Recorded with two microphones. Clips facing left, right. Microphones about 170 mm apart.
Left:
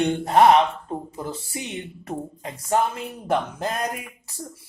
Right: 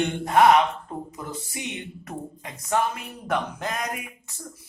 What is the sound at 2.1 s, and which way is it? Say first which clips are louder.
Speech: left 6 dB; 30° left (ahead or behind).